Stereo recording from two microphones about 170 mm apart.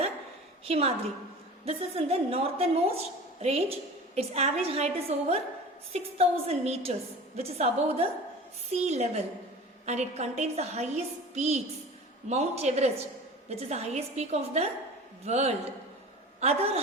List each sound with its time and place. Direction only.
0.6 s a woman's voice: 35° right (ahead or behind)